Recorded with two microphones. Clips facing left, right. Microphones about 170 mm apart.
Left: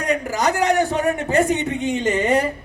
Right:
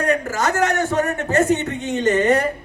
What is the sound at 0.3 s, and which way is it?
A man's voice, 15° left (ahead or behind).